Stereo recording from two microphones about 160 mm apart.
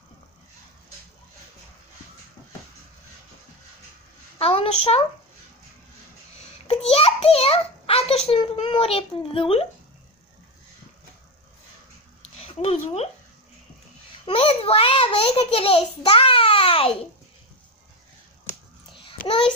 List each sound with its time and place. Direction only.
4.4 s a child's voice: 35° left (ahead or behind)
6.7 s a sound: 35° left (ahead or behind)
8.4 s a child's voice: 30° left (ahead or behind)
12.2 s a sound: 40° left (ahead or behind)
14.2 s a child's voice: 35° left (ahead or behind)
19.2 s a child's voice: 30° left (ahead or behind)